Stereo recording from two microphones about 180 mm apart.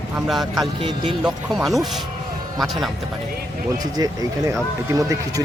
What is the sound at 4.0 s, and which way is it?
Speech, 20° right (ahead or behind).